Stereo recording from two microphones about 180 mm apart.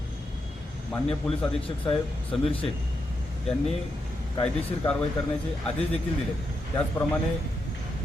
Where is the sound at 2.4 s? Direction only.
30° left (ahead or behind).